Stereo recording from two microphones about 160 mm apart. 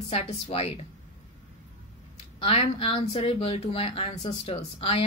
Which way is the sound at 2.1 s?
40° left (ahead or behind).